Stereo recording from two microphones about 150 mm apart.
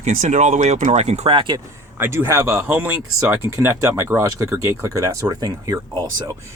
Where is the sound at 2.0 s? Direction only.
15° right (ahead or behind).